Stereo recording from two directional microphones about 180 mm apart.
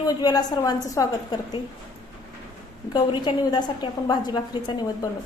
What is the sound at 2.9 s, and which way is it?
A woman's voice, 25° left (ahead or behind).